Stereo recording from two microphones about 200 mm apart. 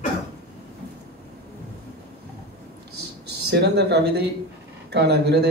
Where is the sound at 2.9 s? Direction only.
55° right (ahead or behind).